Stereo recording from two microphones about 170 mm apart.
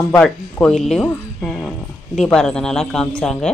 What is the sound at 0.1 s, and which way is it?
Speech, 5° left (ahead or behind).